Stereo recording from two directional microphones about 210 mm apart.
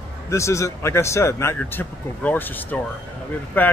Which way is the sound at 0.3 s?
15° left (ahead or behind).